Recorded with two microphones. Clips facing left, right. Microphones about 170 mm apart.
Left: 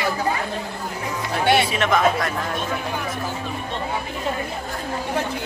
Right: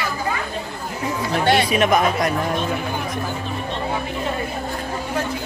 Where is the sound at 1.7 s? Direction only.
20° right (ahead or behind).